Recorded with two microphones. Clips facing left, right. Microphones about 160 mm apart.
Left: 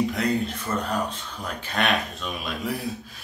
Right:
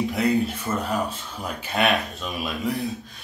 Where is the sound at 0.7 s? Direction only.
20° right (ahead or behind).